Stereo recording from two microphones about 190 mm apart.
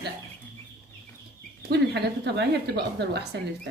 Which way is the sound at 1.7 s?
60° right (ahead or behind).